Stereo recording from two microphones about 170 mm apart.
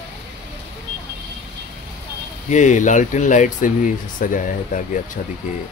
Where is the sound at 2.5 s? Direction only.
45° left (ahead or behind).